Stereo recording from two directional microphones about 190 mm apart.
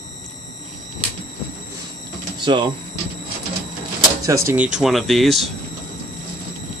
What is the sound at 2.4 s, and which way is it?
Speech, 25° right (ahead or behind).